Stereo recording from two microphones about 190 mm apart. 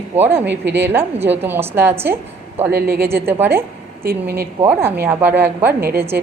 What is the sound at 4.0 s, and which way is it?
Speech, 50° right (ahead or behind).